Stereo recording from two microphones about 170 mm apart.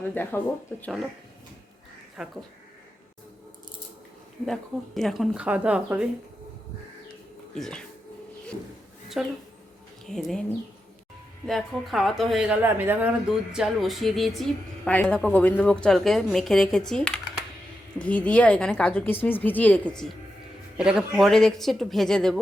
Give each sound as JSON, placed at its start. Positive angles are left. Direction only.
{"t": 0.0, "sound": "speech", "side_deg": 10}
{"t": 2.1, "sound": "speech", "side_deg": -5}
{"t": 4.9, "sound": "speech", "side_deg": 0}
{"t": 7.5, "sound": "speech", "side_deg": 5}
{"t": 9.2, "sound": "speech", "side_deg": 0}
{"t": 11.4, "sound": "speech", "side_deg": 0}